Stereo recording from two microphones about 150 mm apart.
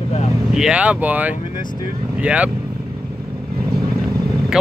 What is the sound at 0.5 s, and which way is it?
Speech, 5° right (ahead or behind).